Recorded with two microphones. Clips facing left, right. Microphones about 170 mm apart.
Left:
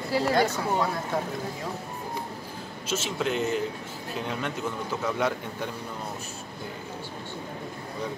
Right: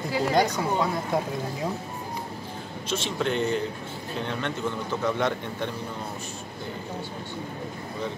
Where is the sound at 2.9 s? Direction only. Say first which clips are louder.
Right 1 dB; 5° left (ahead or behind).